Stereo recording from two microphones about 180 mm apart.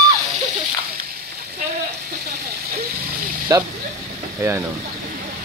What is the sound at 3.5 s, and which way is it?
Speech, 20° right (ahead or behind).